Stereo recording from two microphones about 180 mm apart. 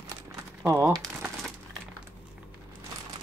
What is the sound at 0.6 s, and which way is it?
Speech, 15° right (ahead or behind).